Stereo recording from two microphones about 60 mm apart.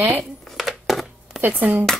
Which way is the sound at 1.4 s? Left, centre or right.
Right.